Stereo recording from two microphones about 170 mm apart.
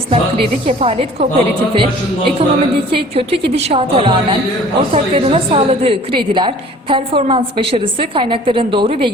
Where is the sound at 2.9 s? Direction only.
35° right (ahead or behind).